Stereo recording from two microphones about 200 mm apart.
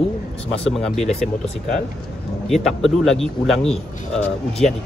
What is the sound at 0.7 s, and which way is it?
Speech, centre (ahead or behind).